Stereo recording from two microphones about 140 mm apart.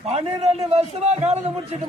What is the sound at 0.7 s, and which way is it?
Speech, 50° right (ahead or behind).